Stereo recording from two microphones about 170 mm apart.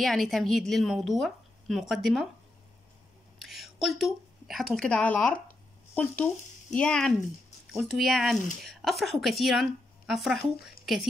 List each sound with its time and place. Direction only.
0.0 s speech: centre (ahead or behind)
3.3 s a woman's voice: centre (ahead or behind)